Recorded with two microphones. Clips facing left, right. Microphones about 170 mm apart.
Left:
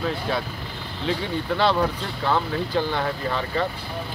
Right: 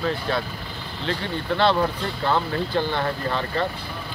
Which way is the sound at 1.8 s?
Centre (ahead or behind).